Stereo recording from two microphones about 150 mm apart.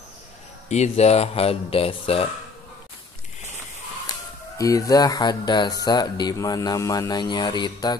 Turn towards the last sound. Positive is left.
turn(degrees=30)  # may be behind; listen again after turning